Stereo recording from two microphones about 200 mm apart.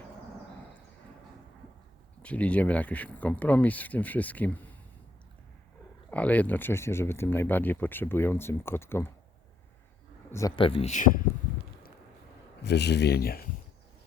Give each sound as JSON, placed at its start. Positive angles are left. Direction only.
{"t": 2.2, "sound": "speech", "side_deg": 5}
{"t": 6.1, "sound": "speech", "side_deg": 5}
{"t": 10.5, "sound": "speech", "side_deg": 25}
{"t": 12.6, "sound": "speech", "side_deg": 55}